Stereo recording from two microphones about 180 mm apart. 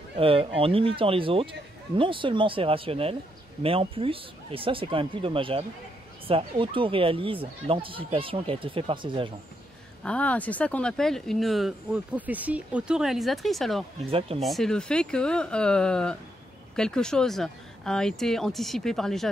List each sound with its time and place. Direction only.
0.2 s speech: 30° right (ahead or behind)
10.0 s speech: 5° left (ahead or behind)